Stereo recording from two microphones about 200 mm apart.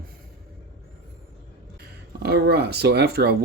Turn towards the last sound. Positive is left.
turn(degrees=-55)  # may be behind; listen again after turning